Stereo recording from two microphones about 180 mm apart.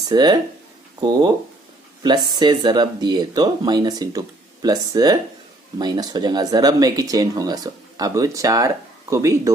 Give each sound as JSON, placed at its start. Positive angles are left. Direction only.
{"t": 0.1, "sound": "speech", "side_deg": -25}